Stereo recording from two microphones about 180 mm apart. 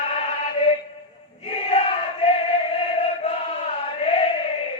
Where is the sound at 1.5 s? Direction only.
35° left (ahead or behind).